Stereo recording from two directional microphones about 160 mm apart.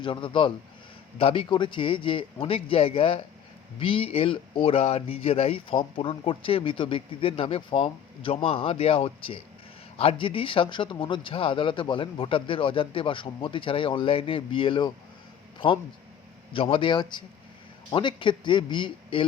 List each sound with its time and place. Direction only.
0.0 s speech: 30° left (ahead or behind)